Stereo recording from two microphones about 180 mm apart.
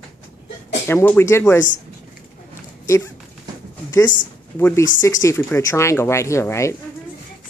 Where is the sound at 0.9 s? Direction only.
10° left (ahead or behind).